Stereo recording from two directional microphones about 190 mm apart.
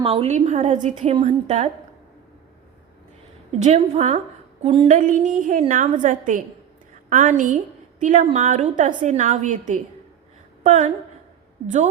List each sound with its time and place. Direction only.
0.0 s a woman's voice: 30° right (ahead or behind)
3.6 s a woman's voice: 35° right (ahead or behind)
4.9 s a woman's voice: 40° right (ahead or behind)